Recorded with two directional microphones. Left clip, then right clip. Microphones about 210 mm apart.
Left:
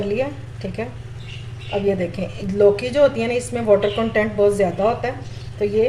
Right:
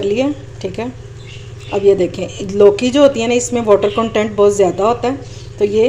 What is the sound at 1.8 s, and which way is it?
A woman's voice, 40° right (ahead or behind).